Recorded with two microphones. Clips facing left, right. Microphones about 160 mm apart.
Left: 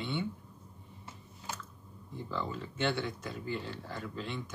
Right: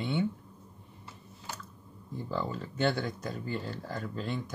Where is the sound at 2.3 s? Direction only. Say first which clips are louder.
Right 3 dB; 40° right (ahead or behind).